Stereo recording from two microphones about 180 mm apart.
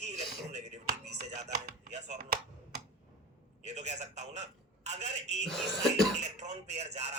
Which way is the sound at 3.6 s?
40° right (ahead or behind).